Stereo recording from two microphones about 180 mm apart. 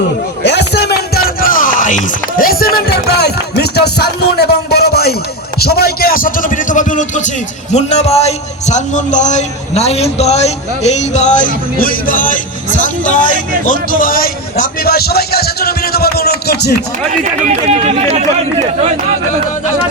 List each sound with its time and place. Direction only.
0.4 s music: 65° left (ahead or behind)
5.5 s speech: 60° left (ahead or behind)
17.1 s speech: 40° right (ahead or behind)